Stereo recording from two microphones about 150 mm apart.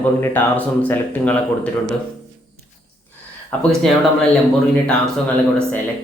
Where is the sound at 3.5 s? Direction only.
10° left (ahead or behind).